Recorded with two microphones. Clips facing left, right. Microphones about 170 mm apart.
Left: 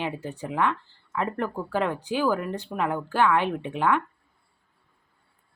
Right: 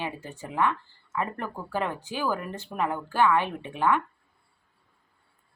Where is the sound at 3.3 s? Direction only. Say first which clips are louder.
Left 2 dB; 15° left (ahead or behind).